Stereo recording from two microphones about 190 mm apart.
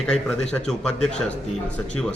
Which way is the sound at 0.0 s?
5° left (ahead or behind).